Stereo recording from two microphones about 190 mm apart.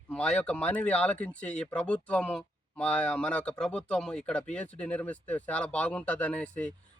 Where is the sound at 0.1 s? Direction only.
5° left (ahead or behind).